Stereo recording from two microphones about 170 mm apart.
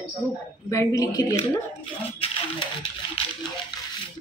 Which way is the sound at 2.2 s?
35° left (ahead or behind).